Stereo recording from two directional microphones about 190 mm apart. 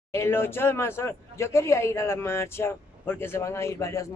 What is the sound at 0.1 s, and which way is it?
Speech, 15° left (ahead or behind).